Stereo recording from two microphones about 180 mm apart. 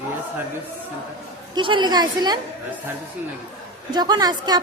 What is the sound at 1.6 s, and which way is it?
Speech, 25° right (ahead or behind).